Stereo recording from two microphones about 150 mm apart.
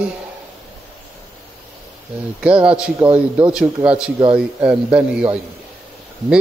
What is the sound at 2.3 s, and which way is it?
A man's voice, 10° right (ahead or behind).